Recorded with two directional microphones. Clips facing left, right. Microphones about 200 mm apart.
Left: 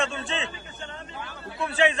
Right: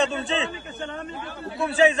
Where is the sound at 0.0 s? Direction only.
35° right (ahead or behind).